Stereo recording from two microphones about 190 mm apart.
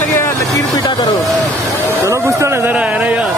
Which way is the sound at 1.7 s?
10° left (ahead or behind).